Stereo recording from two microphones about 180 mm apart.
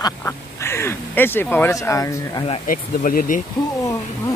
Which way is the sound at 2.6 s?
50° left (ahead or behind).